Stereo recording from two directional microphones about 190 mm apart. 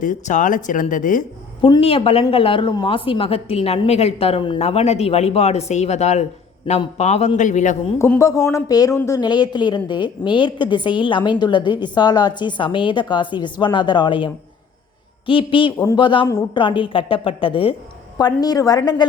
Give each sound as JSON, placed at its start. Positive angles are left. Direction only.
{"t": 0.0, "sound": "speech", "side_deg": 40}
{"t": 1.6, "sound": "speech", "side_deg": 30}
{"t": 7.9, "sound": "a woman's voice", "side_deg": 10}
{"t": 15.3, "sound": "a woman's voice", "side_deg": 25}